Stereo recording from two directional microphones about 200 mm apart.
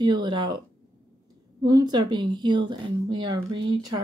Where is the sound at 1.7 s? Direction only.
20° right (ahead or behind).